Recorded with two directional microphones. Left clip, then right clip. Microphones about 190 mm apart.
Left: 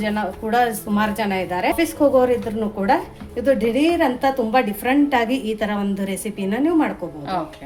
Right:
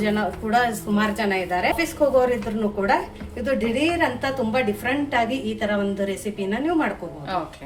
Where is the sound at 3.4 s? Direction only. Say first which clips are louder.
Left 5 dB; 40° left (ahead or behind).